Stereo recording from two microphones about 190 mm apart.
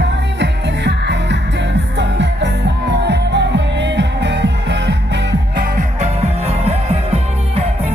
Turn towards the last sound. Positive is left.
turn(degrees=-35)  # may be behind; listen again after turning